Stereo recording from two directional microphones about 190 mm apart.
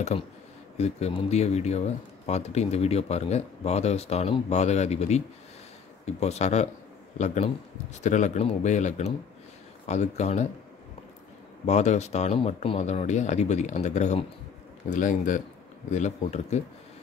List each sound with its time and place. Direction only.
0.7 s speech: 35° left (ahead or behind)
11.6 s speech: 35° left (ahead or behind)